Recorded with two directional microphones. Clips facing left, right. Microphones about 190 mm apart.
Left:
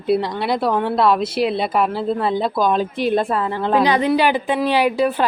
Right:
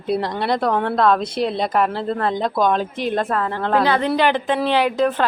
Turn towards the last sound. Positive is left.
turn(degrees=10)  # may be behind; listen again after turning